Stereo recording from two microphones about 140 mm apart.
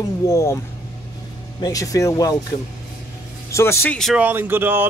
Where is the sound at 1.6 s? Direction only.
25° left (ahead or behind).